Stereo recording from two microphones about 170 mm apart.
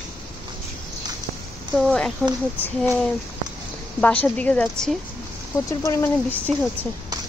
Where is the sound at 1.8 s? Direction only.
Centre (ahead or behind).